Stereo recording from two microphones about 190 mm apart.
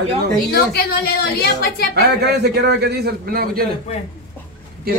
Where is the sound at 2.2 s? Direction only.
60° right (ahead or behind).